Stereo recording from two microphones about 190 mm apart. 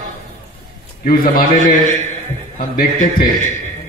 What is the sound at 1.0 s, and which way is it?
A man's voice, 50° left (ahead or behind).